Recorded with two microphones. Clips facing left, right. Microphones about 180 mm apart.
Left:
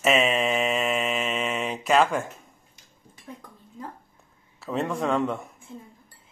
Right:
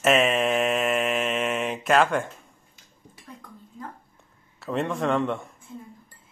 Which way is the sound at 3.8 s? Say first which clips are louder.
Left 1 dB; 25° left (ahead or behind).